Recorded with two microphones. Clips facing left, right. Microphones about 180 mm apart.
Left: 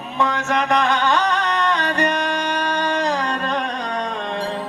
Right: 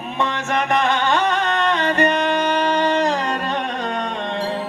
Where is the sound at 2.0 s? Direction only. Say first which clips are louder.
Right 3 dB; 55° right (ahead or behind).